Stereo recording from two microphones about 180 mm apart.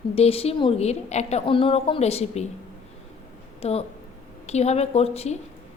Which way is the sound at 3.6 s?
35° left (ahead or behind).